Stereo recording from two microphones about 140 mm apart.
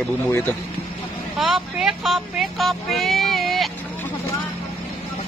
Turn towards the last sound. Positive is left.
turn(degrees=0)  # may be behind; listen again after turning